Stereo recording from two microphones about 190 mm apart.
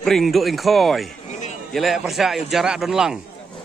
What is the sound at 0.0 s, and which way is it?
A man's voice, centre (ahead or behind).